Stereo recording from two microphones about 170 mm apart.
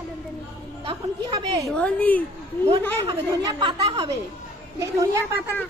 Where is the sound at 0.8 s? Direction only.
20° right (ahead or behind).